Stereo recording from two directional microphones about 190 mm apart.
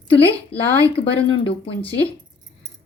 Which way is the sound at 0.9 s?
30° left (ahead or behind).